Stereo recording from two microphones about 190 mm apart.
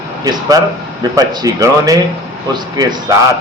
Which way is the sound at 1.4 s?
20° right (ahead or behind).